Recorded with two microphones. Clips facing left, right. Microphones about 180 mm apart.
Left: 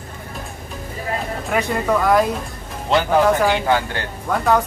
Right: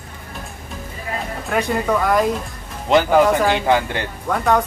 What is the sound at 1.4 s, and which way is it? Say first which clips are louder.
Speech: right 1 dB; centre (ahead or behind).